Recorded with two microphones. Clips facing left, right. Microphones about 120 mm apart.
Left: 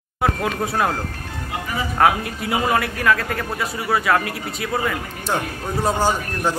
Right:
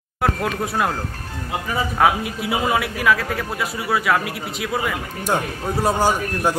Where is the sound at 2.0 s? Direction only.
5° right (ahead or behind).